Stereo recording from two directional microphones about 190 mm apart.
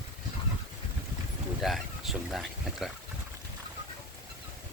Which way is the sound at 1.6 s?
Centre (ahead or behind).